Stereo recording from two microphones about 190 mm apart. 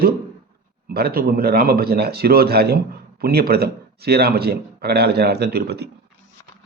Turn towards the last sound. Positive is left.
turn(degrees=-60)  # may be behind; listen again after turning